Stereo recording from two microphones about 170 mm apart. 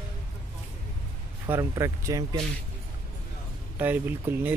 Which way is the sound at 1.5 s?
15° right (ahead or behind).